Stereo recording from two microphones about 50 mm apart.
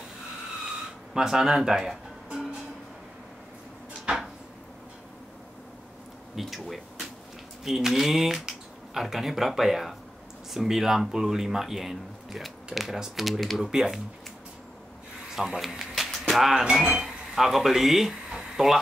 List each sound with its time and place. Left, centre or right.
1.1 s speech: centre
6.3 s speech: centre
13.6 s speech: centre
15.3 s a sound: centre
16.6 s speech: right
17.0 s speech: centre